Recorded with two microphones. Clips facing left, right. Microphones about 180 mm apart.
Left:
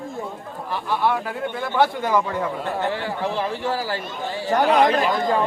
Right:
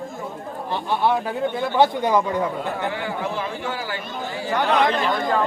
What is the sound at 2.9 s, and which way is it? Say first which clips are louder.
A man's voice: left 1 dB; 30° left (ahead or behind).